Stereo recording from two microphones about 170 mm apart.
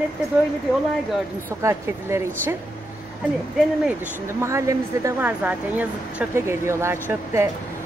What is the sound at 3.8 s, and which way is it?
Speech, 15° right (ahead or behind).